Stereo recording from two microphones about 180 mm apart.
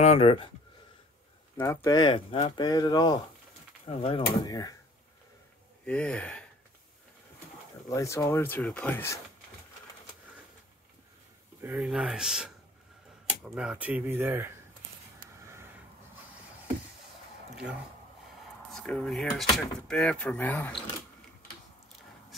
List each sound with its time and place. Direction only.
0.0 s speech: 35° left (ahead or behind)
1.6 s speech: 15° left (ahead or behind)
3.8 s speech: 30° left (ahead or behind)
4.3 s speech: 20° left (ahead or behind)
5.9 s speech: 5° left (ahead or behind)
7.9 s speech: 20° left (ahead or behind)
11.6 s speech: 5° right (ahead or behind)
15.4 s a sound: 15° right (ahead or behind)
18.7 s speech: 5° left (ahead or behind)